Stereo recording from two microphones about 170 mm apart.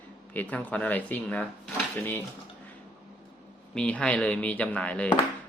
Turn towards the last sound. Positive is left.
turn(degrees=5)  # may be behind; listen again after turning